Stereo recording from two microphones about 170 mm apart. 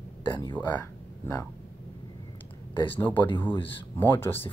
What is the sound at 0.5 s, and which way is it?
Speech, 10° left (ahead or behind).